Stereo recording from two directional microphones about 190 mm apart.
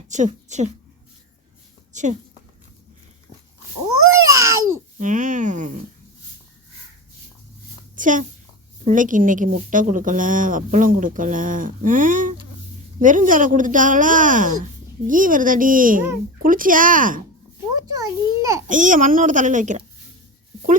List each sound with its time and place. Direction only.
0.1 s speech: 40° right (ahead or behind)
1.9 s a woman's voice: 40° right (ahead or behind)
4.1 s babbling: 15° right (ahead or behind)
4.9 s speech: 40° right (ahead or behind)
7.9 s a child's voice: 45° right (ahead or behind)
17.9 s a child's voice: 15° right (ahead or behind)
18.7 s a woman's voice: 45° right (ahead or behind)